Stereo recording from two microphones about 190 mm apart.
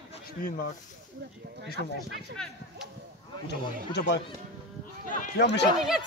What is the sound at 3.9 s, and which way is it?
Speech, 65° left (ahead or behind).